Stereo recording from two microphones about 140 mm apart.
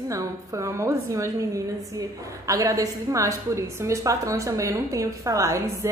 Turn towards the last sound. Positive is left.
turn(degrees=-25)  # may be behind; listen again after turning